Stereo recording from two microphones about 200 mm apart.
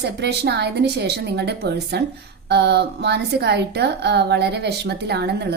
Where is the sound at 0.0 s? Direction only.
55° right (ahead or behind).